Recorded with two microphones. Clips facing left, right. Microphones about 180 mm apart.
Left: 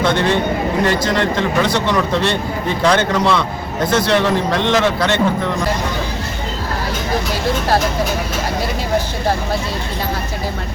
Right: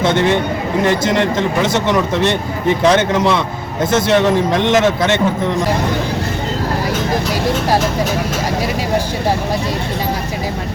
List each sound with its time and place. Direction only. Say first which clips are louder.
0.0 s a man's voice: right 2 dB; 20° right (ahead or behind)